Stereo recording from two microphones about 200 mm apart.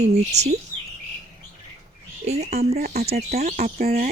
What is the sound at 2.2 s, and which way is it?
Speech, 35° right (ahead or behind).